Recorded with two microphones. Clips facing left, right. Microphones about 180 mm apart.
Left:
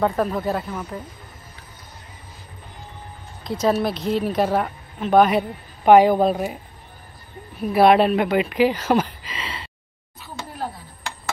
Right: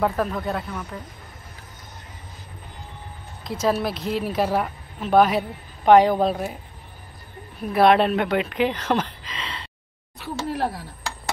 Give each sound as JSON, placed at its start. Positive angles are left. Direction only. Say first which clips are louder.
{"t": 0.0, "sound": "speech", "louder": "left 2 dB", "side_deg": 0}
{"t": 3.6, "sound": "speech", "louder": "left 2 dB", "side_deg": 0}
{"t": 7.7, "sound": "speech", "louder": "left 2 dB", "side_deg": 5}
{"t": 10.1, "sound": "a sound", "louder": "right 7 dB", "side_deg": -75}